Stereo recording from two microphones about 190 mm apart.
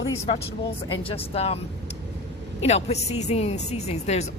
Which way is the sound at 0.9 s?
30° left (ahead or behind).